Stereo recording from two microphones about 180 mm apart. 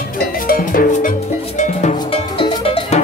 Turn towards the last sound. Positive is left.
turn(degrees=30)  # may be behind; listen again after turning